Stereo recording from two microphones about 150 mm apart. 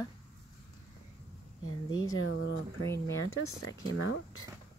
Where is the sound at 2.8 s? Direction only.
20° left (ahead or behind).